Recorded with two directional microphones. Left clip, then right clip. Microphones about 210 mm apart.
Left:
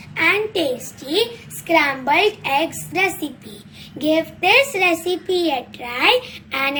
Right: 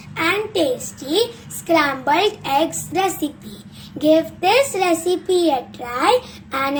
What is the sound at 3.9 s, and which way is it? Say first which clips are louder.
Speech: right 3 dB; 35° right (ahead or behind).